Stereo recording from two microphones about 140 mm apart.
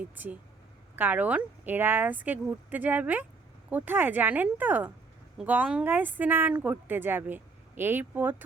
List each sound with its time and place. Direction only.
0.0 s speech: 10° right (ahead or behind)